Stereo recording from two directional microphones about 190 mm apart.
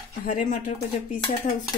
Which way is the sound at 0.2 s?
45° left (ahead or behind).